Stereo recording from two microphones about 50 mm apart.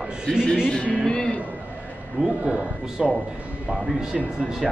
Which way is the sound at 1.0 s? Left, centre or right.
Centre.